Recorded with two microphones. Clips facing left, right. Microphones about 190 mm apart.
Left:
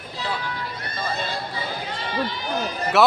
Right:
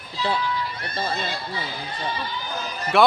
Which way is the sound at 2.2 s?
70° left (ahead or behind).